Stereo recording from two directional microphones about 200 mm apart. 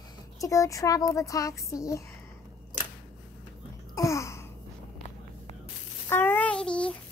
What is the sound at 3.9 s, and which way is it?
Babbling, 15° left (ahead or behind).